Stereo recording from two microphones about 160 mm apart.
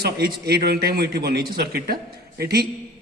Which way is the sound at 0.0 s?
85° right.